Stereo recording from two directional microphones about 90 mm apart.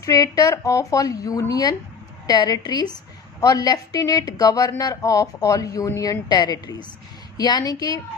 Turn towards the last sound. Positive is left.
turn(degrees=45)  # may be behind; listen again after turning